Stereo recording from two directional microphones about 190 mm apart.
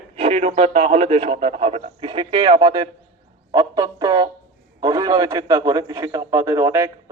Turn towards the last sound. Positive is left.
turn(degrees=-15)  # may be behind; listen again after turning